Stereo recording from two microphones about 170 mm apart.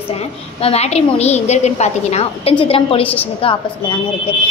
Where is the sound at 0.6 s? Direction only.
35° left (ahead or behind).